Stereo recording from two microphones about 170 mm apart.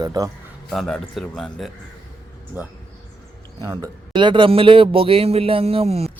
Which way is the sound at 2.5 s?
10° right (ahead or behind).